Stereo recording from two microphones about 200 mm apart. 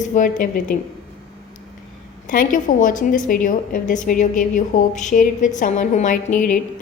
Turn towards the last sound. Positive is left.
turn(degrees=40)  # may be behind; listen again after turning